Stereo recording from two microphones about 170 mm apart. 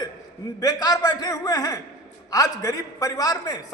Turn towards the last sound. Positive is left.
turn(degrees=20)  # may be behind; listen again after turning